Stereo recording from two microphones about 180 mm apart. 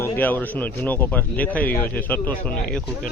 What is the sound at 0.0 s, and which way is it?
Speech, 10° left (ahead or behind).